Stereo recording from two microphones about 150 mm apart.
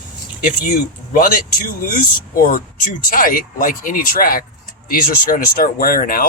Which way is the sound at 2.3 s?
75° left (ahead or behind).